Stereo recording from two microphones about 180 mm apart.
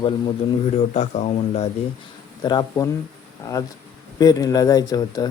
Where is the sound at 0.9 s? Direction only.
40° left (ahead or behind).